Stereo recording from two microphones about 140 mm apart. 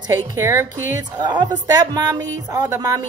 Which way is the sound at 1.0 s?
30° right (ahead or behind).